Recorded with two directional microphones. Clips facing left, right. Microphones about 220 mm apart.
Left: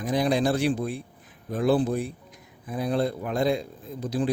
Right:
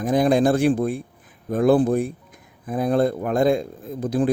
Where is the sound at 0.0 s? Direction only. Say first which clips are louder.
Right 6 dB; 50° right (ahead or behind).